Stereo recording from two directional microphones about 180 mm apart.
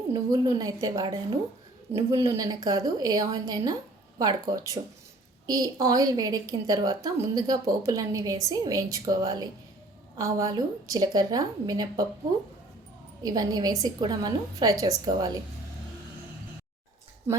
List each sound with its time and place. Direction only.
0.1 s a woman's voice: 20° right (ahead or behind)
13.2 s a woman's voice: 20° right (ahead or behind)